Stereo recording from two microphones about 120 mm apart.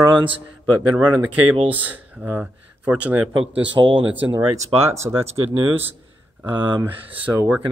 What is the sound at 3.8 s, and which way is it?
Speech, 30° right (ahead or behind).